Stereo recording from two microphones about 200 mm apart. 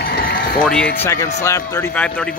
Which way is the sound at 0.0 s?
50° left (ahead or behind).